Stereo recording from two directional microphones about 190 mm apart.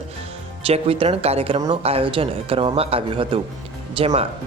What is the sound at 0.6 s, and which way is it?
Speech, 30° right (ahead or behind).